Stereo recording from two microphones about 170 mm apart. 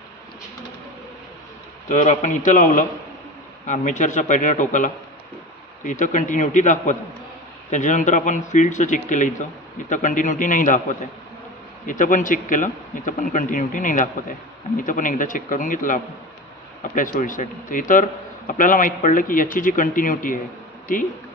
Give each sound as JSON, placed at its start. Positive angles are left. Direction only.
{"t": 1.9, "sound": "a man's voice", "side_deg": 45}